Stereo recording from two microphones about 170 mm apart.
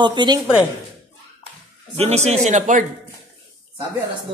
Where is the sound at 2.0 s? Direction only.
40° right (ahead or behind).